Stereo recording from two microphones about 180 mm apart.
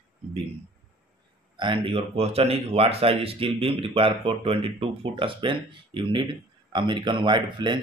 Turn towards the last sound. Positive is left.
turn(degrees=-25)  # may be behind; listen again after turning